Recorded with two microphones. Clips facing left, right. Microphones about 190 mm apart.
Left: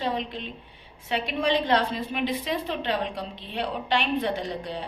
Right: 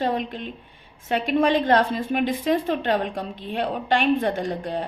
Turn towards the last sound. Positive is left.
turn(degrees=-50)  # may be behind; listen again after turning